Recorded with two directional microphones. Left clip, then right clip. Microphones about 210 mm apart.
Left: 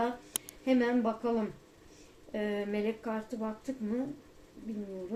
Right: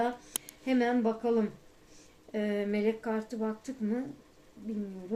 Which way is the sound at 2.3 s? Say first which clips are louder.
Right 2 dB; 35° right (ahead or behind).